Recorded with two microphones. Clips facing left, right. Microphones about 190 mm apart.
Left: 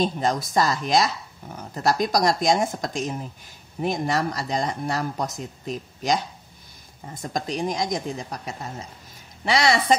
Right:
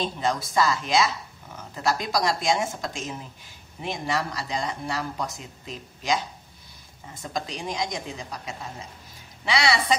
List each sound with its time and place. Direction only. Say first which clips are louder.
0.0 s speech: left 4 dB; 45° left (ahead or behind)
7.2 s speech: left 5 dB; 45° left (ahead or behind)